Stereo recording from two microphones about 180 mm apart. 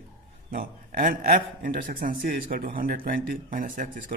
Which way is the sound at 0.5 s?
55° right (ahead or behind).